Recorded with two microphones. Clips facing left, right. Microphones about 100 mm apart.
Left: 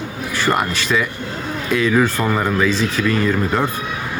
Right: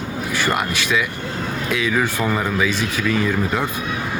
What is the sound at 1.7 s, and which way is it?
Speech, centre (ahead or behind).